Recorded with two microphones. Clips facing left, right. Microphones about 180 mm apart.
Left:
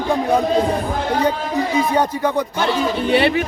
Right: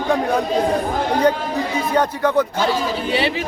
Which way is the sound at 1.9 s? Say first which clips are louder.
Right 1 dB; 10° left (ahead or behind).